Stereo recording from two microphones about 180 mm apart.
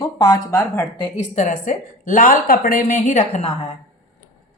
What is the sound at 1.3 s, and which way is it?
A woman's voice, 45° left (ahead or behind).